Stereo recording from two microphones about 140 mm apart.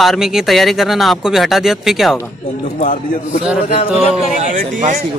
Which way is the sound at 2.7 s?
65° left (ahead or behind).